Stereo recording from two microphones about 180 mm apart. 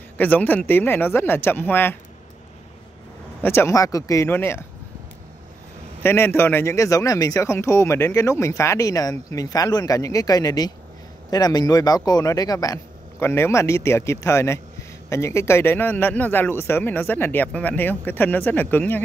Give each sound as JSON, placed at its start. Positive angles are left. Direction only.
{"t": 0.2, "sound": "a man's voice", "side_deg": 10}
{"t": 3.4, "sound": "a man's voice", "side_deg": 15}
{"t": 6.0, "sound": "a man's voice", "side_deg": 15}